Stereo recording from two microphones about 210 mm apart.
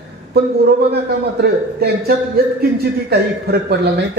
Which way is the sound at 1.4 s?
50° right (ahead or behind).